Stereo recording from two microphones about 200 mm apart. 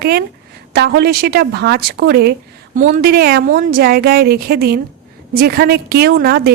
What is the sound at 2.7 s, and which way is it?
A woman's voice, 40° right (ahead or behind).